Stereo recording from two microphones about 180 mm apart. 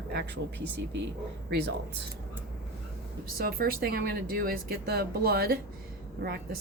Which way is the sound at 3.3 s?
55° right (ahead or behind).